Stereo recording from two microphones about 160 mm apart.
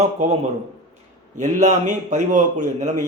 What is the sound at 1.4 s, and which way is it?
Speech, 50° right (ahead or behind).